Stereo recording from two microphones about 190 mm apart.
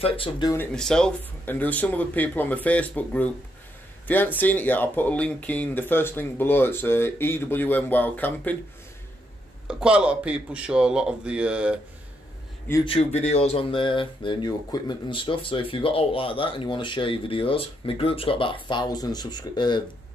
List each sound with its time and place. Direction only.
0.0 s speech: 30° left (ahead or behind)
0.6 s speech: 5° left (ahead or behind)
9.7 s speech: 5° right (ahead or behind)
12.8 s speech: 30° left (ahead or behind)